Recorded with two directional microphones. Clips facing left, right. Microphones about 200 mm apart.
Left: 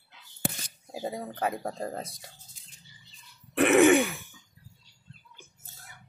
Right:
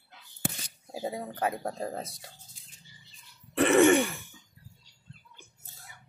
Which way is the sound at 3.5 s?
Centre (ahead or behind).